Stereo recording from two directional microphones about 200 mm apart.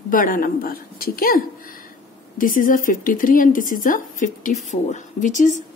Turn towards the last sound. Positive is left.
turn(degrees=40)  # may be behind; listen again after turning